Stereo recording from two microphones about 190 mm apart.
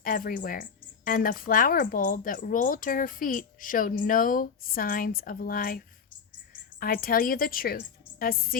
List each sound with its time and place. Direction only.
0.0 s a woman's voice: 45° left (ahead or behind)